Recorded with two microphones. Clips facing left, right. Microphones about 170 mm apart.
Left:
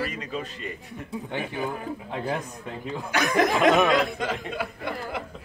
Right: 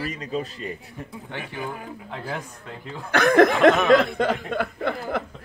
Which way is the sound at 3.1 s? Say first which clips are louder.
Right 6 dB; 60° right (ahead or behind).